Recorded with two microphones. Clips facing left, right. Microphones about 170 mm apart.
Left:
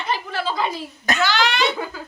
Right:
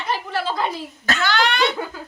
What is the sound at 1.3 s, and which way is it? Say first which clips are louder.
Speech: right 1 dB; 60° right (ahead or behind).